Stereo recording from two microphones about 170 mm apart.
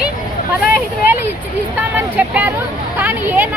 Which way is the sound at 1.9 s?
10° right (ahead or behind).